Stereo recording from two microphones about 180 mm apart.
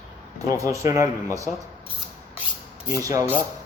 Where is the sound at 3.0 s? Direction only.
20° right (ahead or behind).